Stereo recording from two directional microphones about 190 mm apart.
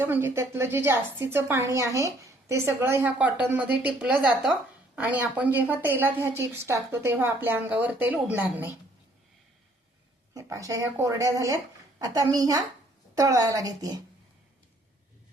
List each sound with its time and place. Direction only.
0.0 s a woman's voice: 10° right (ahead or behind)
10.3 s a woman's voice: 15° right (ahead or behind)